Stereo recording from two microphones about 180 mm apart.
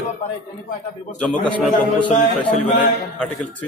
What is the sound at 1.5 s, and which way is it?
Speech, 5° left (ahead or behind).